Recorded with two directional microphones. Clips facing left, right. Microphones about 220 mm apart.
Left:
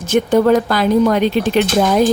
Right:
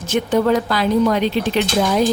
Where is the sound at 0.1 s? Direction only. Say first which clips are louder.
Left 4 dB; 50° left (ahead or behind).